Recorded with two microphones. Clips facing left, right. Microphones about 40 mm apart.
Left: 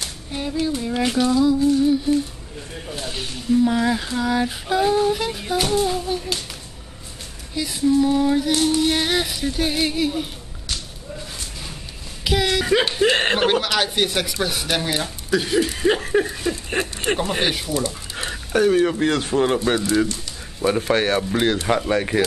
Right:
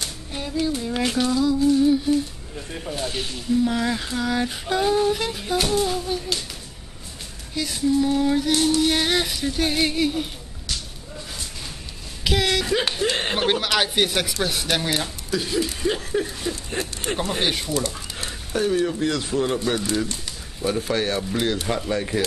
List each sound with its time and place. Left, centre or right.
0.3 s a sound: centre
1.0 s speech: centre
1.7 s humming: centre
3.1 s speech: centre
7.5 s speech: centre
12.3 s speech: centre
12.6 s speech: left
13.5 s speech: centre
15.3 s speech: left
17.4 s speech: centre
17.7 s a sound: left
18.5 s speech: left
20.8 s speech: left
21.2 s speech: left